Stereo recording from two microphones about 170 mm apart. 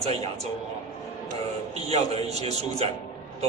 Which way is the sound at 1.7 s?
35° right (ahead or behind).